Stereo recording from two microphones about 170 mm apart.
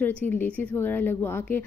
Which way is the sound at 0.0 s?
10° left (ahead or behind).